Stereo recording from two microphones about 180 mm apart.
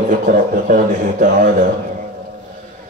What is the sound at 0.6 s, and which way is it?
Music, 45° right (ahead or behind).